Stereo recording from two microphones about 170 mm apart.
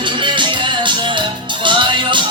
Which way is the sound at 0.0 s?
30° right (ahead or behind).